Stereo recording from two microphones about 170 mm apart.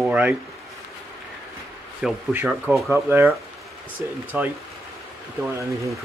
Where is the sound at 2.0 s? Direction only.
5° right (ahead or behind).